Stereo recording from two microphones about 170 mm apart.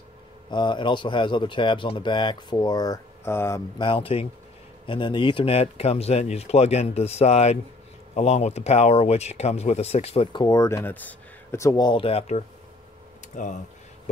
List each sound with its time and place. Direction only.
0.5 s speech: 25° left (ahead or behind)
3.8 s speech: 30° left (ahead or behind)
13.4 s speech: 50° left (ahead or behind)